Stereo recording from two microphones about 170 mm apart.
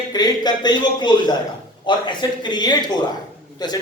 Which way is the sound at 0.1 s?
25° left (ahead or behind).